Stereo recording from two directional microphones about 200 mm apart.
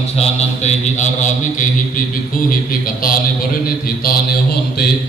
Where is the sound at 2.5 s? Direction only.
45° left (ahead or behind).